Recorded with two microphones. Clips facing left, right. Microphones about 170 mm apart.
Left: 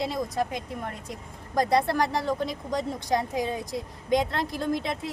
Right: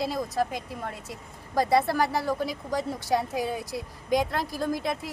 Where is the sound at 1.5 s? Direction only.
5° right (ahead or behind).